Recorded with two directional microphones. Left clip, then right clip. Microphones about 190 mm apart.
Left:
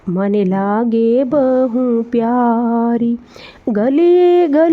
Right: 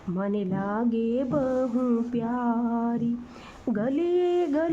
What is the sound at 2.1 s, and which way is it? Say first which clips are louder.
Speech: left 14 dB; 40° left (ahead or behind).